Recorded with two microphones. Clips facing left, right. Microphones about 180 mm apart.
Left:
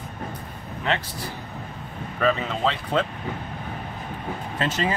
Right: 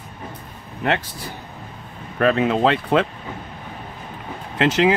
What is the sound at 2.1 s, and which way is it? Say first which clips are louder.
Speech: right 6 dB; 60° right (ahead or behind).